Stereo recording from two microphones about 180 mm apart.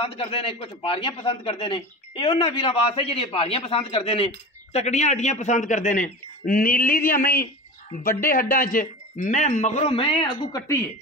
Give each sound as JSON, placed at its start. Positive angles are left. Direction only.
{"t": 0.0, "sound": "a man's voice", "side_deg": 30}